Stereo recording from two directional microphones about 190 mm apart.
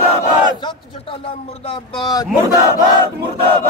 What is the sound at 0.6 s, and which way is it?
Speech, 25° left (ahead or behind).